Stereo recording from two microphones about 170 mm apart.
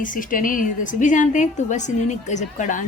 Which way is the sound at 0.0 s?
50° left (ahead or behind).